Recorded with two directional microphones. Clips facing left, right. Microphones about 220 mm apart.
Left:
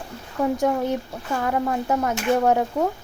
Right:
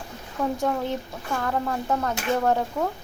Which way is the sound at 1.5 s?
15° left (ahead or behind).